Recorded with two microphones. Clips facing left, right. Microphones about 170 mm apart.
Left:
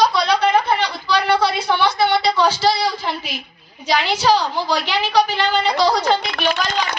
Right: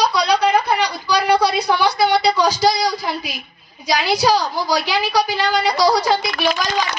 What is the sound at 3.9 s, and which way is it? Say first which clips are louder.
A woman's voice: even; 40° right (ahead or behind).